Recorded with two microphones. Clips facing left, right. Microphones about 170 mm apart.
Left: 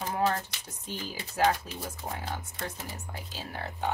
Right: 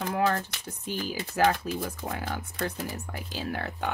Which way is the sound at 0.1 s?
60° right (ahead or behind).